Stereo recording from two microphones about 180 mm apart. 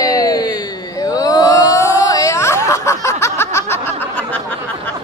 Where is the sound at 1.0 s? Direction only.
20° left (ahead or behind).